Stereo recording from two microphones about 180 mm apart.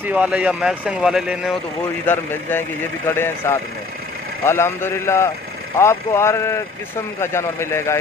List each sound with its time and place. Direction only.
0.0 s speech: 10° right (ahead or behind)
3.1 s a man's voice: 15° left (ahead or behind)